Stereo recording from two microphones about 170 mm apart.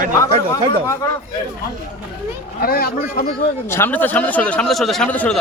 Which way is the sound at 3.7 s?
10° left (ahead or behind).